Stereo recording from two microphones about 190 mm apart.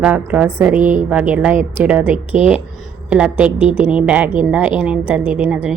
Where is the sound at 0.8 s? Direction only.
40° right (ahead or behind).